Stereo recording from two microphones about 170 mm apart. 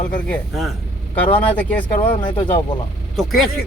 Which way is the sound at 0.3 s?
Centre (ahead or behind).